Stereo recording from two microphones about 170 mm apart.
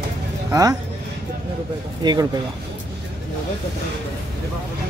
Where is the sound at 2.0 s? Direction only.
25° right (ahead or behind).